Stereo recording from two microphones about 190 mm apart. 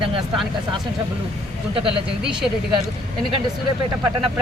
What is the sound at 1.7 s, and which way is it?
Speech, 30° right (ahead or behind).